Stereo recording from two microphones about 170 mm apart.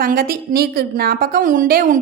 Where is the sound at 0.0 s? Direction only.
55° right (ahead or behind).